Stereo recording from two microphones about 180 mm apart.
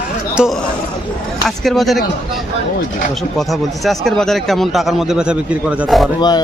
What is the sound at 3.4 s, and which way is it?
Speech, centre (ahead or behind).